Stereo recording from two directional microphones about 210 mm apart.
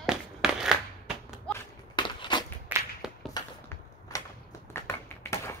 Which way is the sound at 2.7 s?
Centre (ahead or behind).